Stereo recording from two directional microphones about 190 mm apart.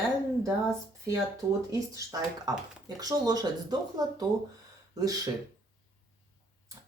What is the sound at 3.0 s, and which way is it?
Speech, 20° right (ahead or behind).